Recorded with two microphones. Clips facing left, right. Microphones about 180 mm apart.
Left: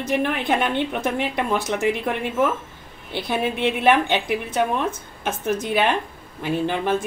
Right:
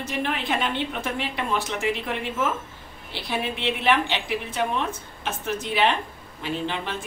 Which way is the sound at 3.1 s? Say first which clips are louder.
Left 5 dB; 50° left (ahead or behind).